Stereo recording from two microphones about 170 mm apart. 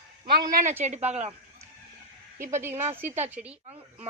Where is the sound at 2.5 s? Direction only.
15° right (ahead or behind).